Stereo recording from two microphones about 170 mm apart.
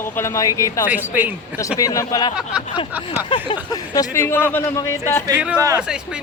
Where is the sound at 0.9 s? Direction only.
10° right (ahead or behind).